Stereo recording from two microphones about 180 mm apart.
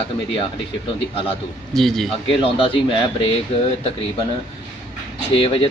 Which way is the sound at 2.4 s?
30° left (ahead or behind).